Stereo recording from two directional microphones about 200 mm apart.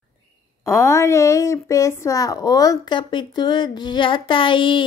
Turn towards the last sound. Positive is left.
turn(degrees=25)  # may be behind; listen again after turning